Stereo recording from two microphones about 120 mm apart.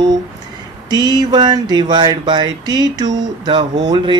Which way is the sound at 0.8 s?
35° right (ahead or behind).